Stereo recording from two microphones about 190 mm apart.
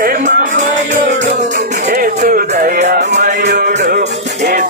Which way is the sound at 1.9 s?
45° right (ahead or behind).